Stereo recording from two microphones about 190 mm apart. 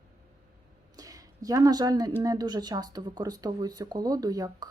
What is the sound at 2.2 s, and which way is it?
Speech, 20° right (ahead or behind).